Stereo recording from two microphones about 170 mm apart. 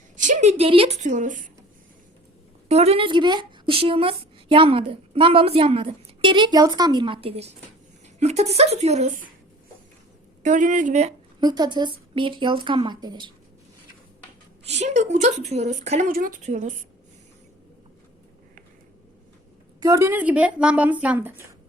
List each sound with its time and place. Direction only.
0.2 s a woman's voice: 45° right (ahead or behind)
2.6 s a woman's voice: 40° right (ahead or behind)
10.4 s a woman's voice: 50° right (ahead or behind)
11.3 s speech: 25° right (ahead or behind)
14.7 s a woman's voice: 40° right (ahead or behind)
19.8 s speech: 20° right (ahead or behind)